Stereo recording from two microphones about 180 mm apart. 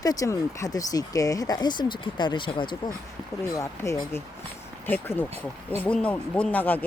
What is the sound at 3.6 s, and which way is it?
Speech, 15° left (ahead or behind).